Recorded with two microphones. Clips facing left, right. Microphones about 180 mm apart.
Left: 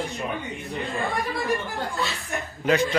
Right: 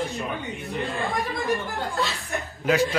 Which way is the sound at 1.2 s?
20° right (ahead or behind).